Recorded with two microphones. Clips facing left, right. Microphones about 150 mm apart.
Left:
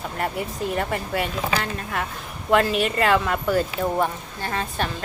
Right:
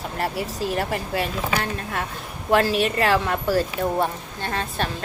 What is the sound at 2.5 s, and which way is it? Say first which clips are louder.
Speech: even; 30° right (ahead or behind).